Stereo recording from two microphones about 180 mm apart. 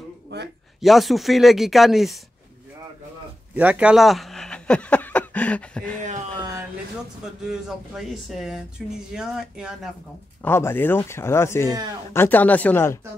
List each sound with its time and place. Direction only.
0.3 s a man's voice: 70° right (ahead or behind)
0.7 s speech: centre (ahead or behind)
3.5 s speech: 5° right (ahead or behind)
5.9 s speech: 45° right (ahead or behind)
7.4 s speech: 5° right (ahead or behind)
10.4 s speech: 10° left (ahead or behind)